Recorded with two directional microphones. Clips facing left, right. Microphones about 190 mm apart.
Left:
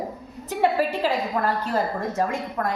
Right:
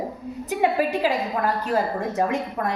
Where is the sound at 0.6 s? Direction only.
15° right (ahead or behind).